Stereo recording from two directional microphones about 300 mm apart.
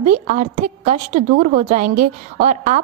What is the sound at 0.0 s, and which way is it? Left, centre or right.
A woman's voice, right.